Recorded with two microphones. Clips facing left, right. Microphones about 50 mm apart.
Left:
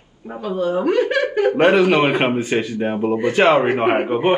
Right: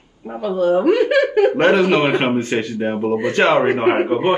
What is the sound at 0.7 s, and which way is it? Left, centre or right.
Speech, right.